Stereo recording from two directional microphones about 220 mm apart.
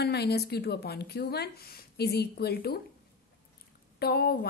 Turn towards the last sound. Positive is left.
turn(degrees=45)  # may be behind; listen again after turning